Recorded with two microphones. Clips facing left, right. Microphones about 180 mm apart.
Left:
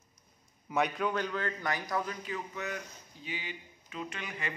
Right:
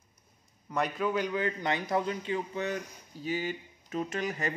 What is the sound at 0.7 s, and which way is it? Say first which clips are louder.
A man's voice: right 1 dB; centre (ahead or behind).